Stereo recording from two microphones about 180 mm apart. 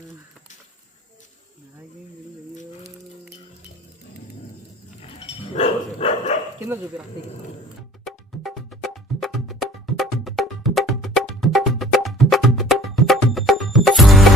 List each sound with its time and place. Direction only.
5.0 s dog: 30° left (ahead or behind)
8.0 s music: centre (ahead or behind)